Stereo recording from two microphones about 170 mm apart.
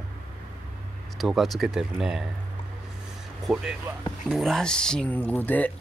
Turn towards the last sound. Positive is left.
turn(degrees=10)  # may be behind; listen again after turning